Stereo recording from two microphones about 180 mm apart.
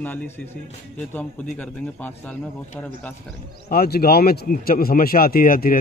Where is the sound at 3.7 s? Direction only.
55° left (ahead or behind).